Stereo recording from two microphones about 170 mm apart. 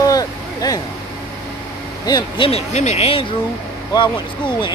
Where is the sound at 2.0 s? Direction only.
25° left (ahead or behind).